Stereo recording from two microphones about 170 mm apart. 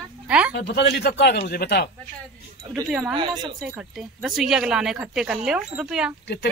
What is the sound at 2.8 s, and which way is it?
Speech, 5° right (ahead or behind).